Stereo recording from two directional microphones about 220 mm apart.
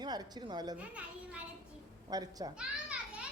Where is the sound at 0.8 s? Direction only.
5° right (ahead or behind).